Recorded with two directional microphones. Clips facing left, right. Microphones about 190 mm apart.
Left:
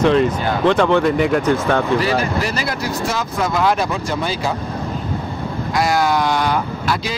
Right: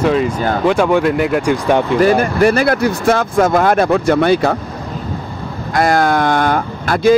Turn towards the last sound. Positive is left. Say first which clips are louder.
# right 10 dB
turn(degrees=-50)  # may be behind; listen again after turning